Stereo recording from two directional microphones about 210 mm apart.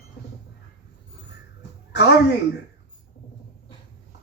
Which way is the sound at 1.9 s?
55° left (ahead or behind).